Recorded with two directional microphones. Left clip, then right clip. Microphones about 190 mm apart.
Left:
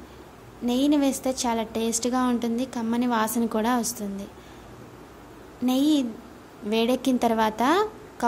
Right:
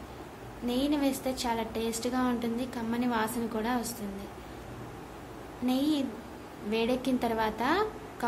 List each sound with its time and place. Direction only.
0.7 s a woman's voice: 50° left (ahead or behind)
5.7 s a woman's voice: 55° left (ahead or behind)